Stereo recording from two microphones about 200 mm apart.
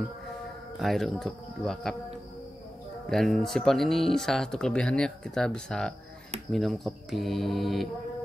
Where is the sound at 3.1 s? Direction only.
Centre (ahead or behind).